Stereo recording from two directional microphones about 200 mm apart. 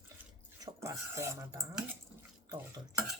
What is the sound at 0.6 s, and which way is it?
Speech, 15° right (ahead or behind).